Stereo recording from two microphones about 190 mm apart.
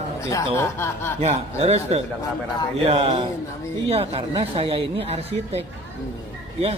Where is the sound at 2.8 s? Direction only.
30° right (ahead or behind).